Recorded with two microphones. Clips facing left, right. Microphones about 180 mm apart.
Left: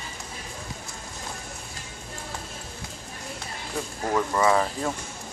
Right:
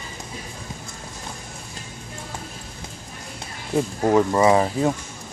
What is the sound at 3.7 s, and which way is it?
Speech, 25° right (ahead or behind).